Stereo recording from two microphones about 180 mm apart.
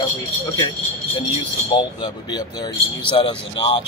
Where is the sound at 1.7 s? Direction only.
25° left (ahead or behind).